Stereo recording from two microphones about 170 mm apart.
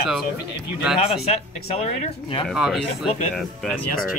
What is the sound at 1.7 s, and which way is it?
Speech, 35° left (ahead or behind).